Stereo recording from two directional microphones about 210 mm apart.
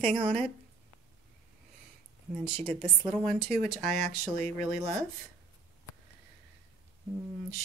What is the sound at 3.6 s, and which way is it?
Speech, centre (ahead or behind).